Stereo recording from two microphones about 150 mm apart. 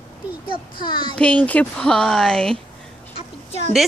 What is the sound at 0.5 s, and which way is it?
Speech, 30° left (ahead or behind).